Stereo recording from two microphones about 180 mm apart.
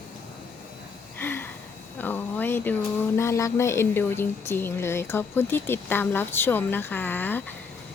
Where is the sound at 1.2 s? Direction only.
10° left (ahead or behind).